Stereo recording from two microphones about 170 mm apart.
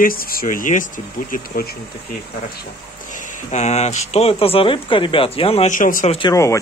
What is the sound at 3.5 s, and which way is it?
Speech, 40° left (ahead or behind).